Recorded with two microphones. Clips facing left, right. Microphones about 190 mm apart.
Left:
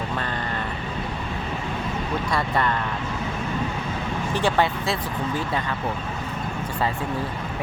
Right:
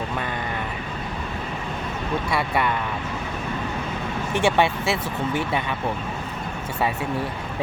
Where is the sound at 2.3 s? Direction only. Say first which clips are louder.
Even; 10° right (ahead or behind).